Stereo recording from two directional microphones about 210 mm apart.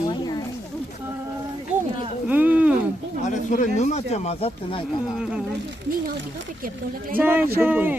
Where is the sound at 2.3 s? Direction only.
10° right (ahead or behind).